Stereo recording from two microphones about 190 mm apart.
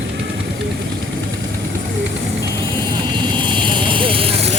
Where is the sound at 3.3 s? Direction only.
25° right (ahead or behind).